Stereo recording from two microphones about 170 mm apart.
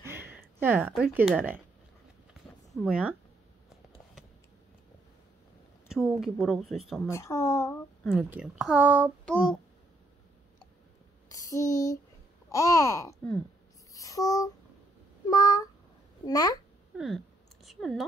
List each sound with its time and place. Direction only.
0.0 s a sound: 15° right (ahead or behind)
0.6 s speech: 10° right (ahead or behind)
2.7 s speech: 5° right (ahead or behind)
5.9 s speech: centre (ahead or behind)
7.1 s speech: 15° left (ahead or behind)
8.0 s speech: 5° right (ahead or behind)
11.2 s a sound: 20° left (ahead or behind)
12.4 s speech: 20° left (ahead or behind)
13.9 s a sound: 20° left (ahead or behind)
16.3 s speech: 20° left (ahead or behind)
16.9 s a sound: centre (ahead or behind)
17.6 s speech: centre (ahead or behind)